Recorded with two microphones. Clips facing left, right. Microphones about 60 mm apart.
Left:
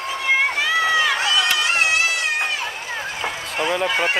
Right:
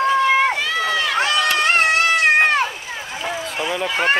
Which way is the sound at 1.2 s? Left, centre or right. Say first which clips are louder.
Right 2 dB; right.